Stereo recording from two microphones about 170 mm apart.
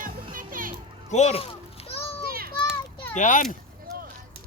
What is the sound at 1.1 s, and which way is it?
Speech, 40° left (ahead or behind).